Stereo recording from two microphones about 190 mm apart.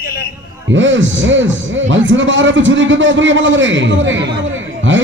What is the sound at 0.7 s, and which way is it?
A man's voice, 80° right.